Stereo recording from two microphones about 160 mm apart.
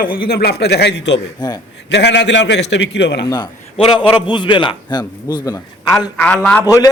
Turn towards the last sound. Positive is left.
turn(degrees=20)  # may be behind; listen again after turning